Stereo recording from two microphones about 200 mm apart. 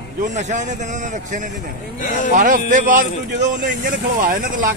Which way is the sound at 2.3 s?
40° right (ahead or behind).